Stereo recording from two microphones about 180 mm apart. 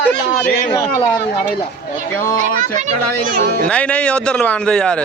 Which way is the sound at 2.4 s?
40° right (ahead or behind).